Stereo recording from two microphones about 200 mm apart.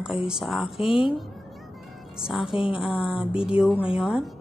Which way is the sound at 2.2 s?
Centre (ahead or behind).